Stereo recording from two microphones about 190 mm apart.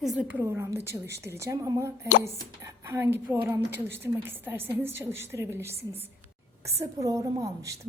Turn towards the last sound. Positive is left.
turn(degrees=-15)  # may be behind; listen again after turning